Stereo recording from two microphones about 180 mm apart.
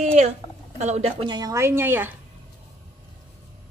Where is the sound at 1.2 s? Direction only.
20° right (ahead or behind).